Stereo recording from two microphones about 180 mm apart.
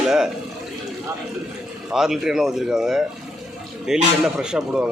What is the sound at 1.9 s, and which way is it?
Speech, 5° right (ahead or behind).